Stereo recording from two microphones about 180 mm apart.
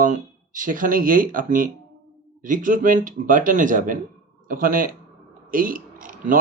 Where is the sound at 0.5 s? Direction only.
50° right (ahead or behind).